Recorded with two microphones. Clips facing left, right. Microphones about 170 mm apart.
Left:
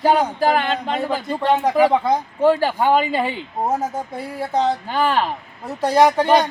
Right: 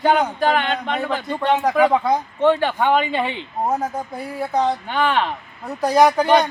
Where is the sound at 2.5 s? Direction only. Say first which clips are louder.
Left 1 dB; 35° left (ahead or behind).